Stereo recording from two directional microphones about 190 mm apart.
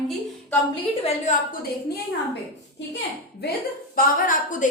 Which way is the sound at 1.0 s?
40° left (ahead or behind).